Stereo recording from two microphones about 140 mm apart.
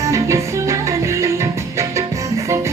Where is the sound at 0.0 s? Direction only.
20° right (ahead or behind).